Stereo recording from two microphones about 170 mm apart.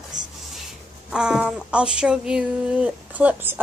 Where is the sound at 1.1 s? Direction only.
5° right (ahead or behind).